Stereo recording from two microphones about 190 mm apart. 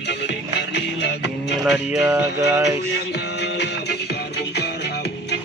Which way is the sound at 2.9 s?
60° left (ahead or behind).